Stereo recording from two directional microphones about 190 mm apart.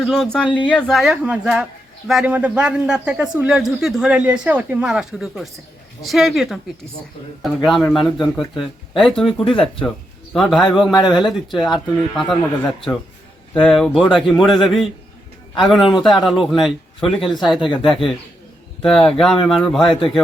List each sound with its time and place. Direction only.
0.0 s speech: centre (ahead or behind)
9.2 s speech: 30° left (ahead or behind)
10.3 s speech: centre (ahead or behind)
15.9 s speech: centre (ahead or behind)